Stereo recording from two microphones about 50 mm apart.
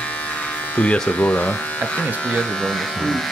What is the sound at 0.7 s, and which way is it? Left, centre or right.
Speech, left.